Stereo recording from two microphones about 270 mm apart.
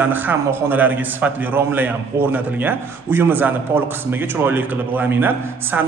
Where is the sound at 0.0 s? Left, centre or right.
Centre.